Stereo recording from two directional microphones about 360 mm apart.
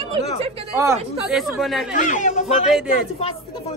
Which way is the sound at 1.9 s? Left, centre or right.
Left.